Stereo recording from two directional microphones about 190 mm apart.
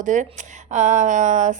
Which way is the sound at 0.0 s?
40° right (ahead or behind).